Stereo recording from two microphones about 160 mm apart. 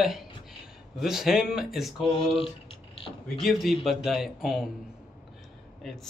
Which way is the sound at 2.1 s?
35° left (ahead or behind).